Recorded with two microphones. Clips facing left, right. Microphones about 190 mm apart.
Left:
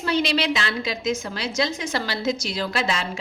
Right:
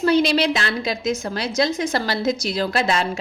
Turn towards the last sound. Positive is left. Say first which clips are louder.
# right 5 dB
turn(degrees=-45)  # may be behind; listen again after turning